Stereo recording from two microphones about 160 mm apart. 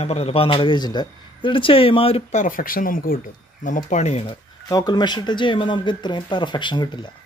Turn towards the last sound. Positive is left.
turn(degrees=30)  # may be behind; listen again after turning